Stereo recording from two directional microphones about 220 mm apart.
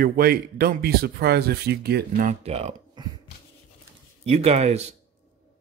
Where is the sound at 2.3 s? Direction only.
30° right (ahead or behind).